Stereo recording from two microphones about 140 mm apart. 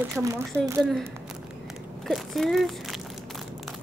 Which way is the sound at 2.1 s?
Centre (ahead or behind).